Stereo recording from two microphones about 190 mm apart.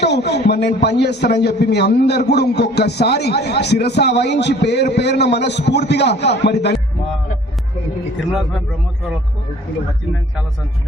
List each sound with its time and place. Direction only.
0.0 s a man's voice: 60° left (ahead or behind)
8.3 s a man's voice: centre (ahead or behind)